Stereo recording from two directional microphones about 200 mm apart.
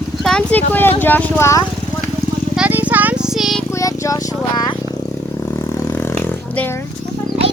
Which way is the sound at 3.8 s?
15° left (ahead or behind).